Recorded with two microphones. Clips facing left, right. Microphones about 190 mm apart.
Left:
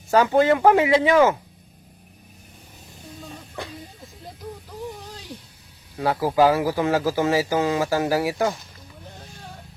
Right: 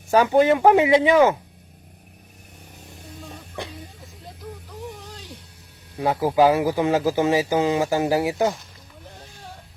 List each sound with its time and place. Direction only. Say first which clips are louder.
0.1 s speech: right 1 dB; 15° right (ahead or behind)
6.0 s speech: right 1 dB; 20° right (ahead or behind)